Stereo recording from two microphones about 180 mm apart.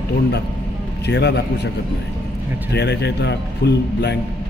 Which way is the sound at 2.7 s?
70° left (ahead or behind).